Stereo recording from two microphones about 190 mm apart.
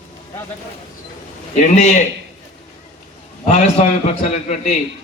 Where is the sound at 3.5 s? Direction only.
35° left (ahead or behind).